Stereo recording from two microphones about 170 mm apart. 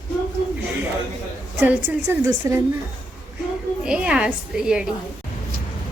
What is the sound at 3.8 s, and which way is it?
A woman's voice, 5° right (ahead or behind).